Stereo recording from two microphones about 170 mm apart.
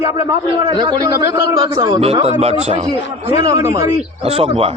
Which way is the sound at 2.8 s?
25° right (ahead or behind).